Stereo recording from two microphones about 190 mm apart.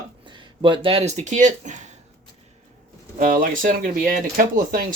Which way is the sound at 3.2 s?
45° right (ahead or behind).